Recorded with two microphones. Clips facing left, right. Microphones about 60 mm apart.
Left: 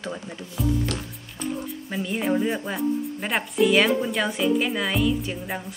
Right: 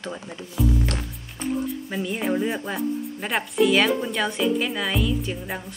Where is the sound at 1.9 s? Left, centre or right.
Centre.